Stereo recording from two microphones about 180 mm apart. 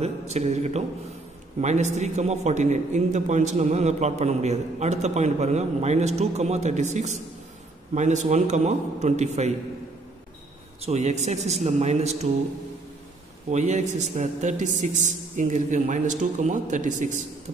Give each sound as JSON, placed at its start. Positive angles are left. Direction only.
{"t": 0.0, "sound": "a man's voice", "side_deg": -40}
{"t": 10.8, "sound": "a man's voice", "side_deg": -40}
{"t": 13.5, "sound": "a man's voice", "side_deg": -40}